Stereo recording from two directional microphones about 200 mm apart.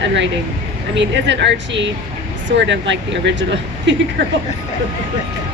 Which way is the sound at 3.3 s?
65° right (ahead or behind).